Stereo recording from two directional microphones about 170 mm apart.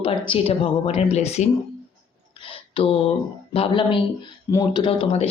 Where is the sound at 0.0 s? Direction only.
35° left (ahead or behind).